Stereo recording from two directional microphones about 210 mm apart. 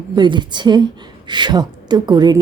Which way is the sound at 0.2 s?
20° right (ahead or behind).